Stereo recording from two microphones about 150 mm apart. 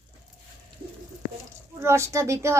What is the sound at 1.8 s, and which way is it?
Speech, 20° right (ahead or behind).